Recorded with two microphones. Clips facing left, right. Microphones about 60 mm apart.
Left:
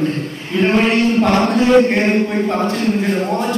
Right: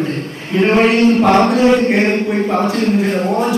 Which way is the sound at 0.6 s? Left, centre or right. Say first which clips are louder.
Right 3 dB; centre.